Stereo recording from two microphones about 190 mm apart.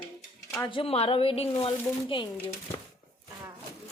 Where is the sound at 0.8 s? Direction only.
30° left (ahead or behind).